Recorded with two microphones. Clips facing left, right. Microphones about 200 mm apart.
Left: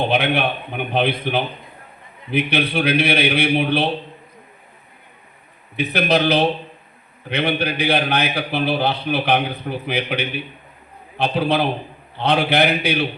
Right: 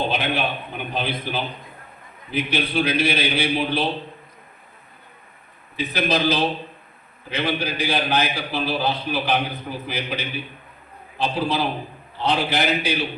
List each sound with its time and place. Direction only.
0.0 s a man's voice: 60° left (ahead or behind)
5.7 s a man's voice: 65° left (ahead or behind)